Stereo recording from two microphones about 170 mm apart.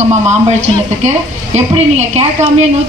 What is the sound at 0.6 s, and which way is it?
A woman's voice, 40° right (ahead or behind).